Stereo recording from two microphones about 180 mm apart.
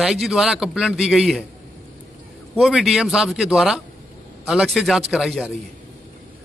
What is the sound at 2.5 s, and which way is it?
A man's voice, centre (ahead or behind).